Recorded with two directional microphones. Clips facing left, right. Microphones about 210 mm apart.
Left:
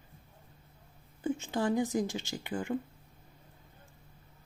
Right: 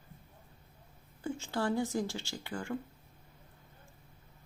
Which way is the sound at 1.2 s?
20° left (ahead or behind).